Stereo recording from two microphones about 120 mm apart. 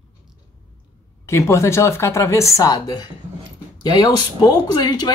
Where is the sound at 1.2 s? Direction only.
25° left (ahead or behind).